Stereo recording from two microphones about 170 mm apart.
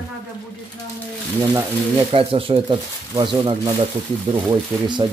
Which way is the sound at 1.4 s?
20° right (ahead or behind).